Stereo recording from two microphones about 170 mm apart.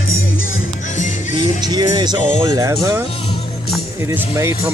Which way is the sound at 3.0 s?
30° left (ahead or behind).